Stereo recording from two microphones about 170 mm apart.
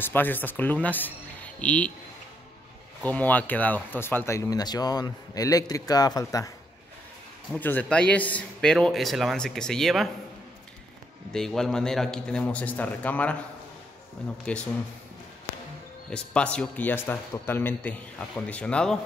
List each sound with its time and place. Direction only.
0.0 s speech: 10° left (ahead or behind)
3.0 s speech: 10° left (ahead or behind)
7.5 s a man's voice: 10° left (ahead or behind)
11.3 s a man's voice: centre (ahead or behind)
14.4 s speech: 5° left (ahead or behind)
16.1 s speech: 5° left (ahead or behind)